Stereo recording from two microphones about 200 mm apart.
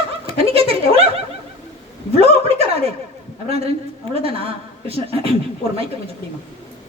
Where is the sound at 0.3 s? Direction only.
30° right (ahead or behind).